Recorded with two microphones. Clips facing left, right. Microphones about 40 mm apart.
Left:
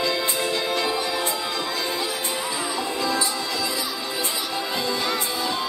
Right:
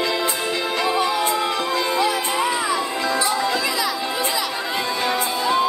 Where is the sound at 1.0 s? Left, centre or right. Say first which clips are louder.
Right 6 dB; right.